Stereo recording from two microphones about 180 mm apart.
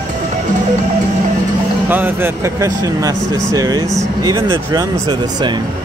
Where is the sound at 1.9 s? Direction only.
10° right (ahead or behind).